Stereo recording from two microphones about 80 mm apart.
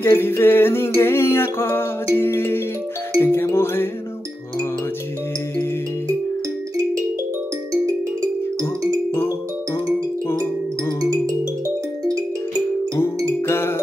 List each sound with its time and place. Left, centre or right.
0.0 s music: left
11.1 s music: right
13.5 s music: left